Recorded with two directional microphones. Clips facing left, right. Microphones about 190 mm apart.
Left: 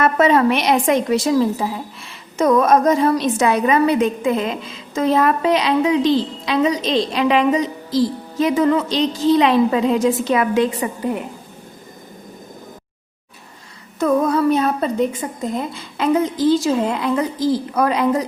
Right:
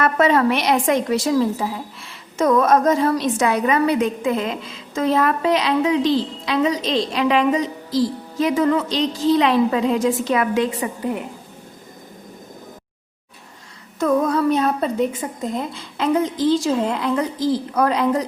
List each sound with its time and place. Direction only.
0.0 s a woman's voice: 20° left (ahead or behind)
14.0 s speech: 10° left (ahead or behind)